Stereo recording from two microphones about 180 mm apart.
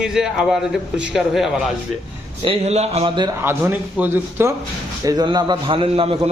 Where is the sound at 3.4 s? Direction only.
10° right (ahead or behind).